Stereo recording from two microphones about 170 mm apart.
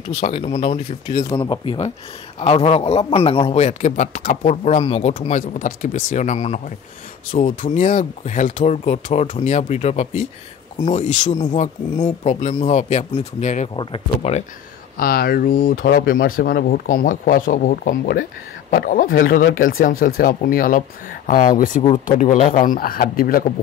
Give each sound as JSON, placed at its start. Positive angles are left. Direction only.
{"t": 0.1, "sound": "a man's voice", "side_deg": 35}
{"t": 1.1, "sound": "a man's voice", "side_deg": 25}
{"t": 15.0, "sound": "speech", "side_deg": 60}